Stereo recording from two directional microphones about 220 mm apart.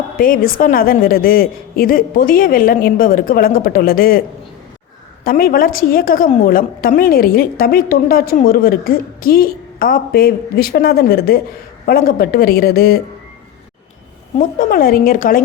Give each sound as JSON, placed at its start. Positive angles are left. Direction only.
{"t": 0.2, "sound": "a woman's voice", "side_deg": 40}
{"t": 5.2, "sound": "a woman's voice", "side_deg": 40}
{"t": 14.3, "sound": "a woman's voice", "side_deg": 40}